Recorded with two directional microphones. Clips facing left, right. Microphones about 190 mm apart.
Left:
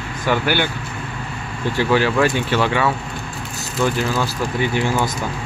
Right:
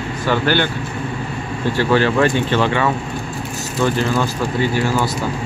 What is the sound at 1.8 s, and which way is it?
Speech, 10° left (ahead or behind).